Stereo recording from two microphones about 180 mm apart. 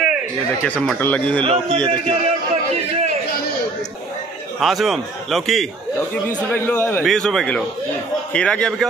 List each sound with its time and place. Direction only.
0.7 s speech: 5° left (ahead or behind)
1.4 s a man's voice: 30° right (ahead or behind)
1.9 s a sound: 35° right (ahead or behind)
4.6 s a man's voice: centre (ahead or behind)